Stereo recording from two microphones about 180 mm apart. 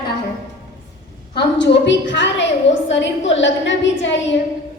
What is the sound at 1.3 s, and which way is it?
A woman's voice, 75° left (ahead or behind).